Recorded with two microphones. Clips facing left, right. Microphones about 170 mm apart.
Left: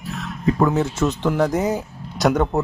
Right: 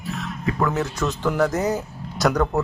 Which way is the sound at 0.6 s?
20° left (ahead or behind).